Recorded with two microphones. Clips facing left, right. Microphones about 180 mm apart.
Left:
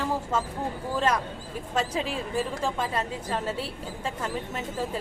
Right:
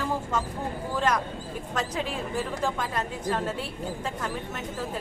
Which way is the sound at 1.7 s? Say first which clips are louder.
Left 2 dB; 30° left (ahead or behind).